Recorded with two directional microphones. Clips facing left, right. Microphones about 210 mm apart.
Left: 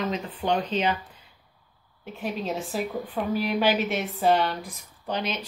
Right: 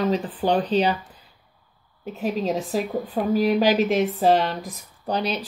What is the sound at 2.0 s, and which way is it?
Speech, 40° right (ahead or behind).